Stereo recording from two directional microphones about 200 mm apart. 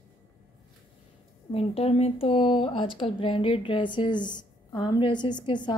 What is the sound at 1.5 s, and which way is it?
Speech, 30° left (ahead or behind).